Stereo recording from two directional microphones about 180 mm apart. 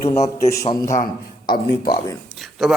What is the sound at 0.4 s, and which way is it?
Speech, 20° left (ahead or behind).